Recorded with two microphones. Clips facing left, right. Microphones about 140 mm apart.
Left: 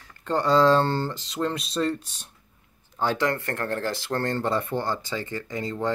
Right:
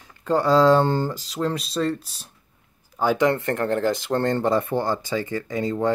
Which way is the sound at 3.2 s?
20° right (ahead or behind).